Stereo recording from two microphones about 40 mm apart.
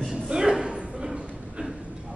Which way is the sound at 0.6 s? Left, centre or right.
Right.